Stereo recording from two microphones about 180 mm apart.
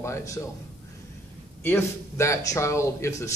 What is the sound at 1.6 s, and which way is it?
A man's voice, 15° left (ahead or behind).